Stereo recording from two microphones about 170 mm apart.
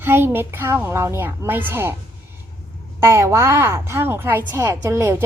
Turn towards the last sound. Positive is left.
turn(degrees=-15)  # may be behind; listen again after turning